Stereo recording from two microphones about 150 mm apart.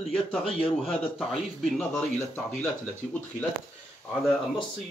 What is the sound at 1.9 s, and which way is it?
Speech, 10° left (ahead or behind).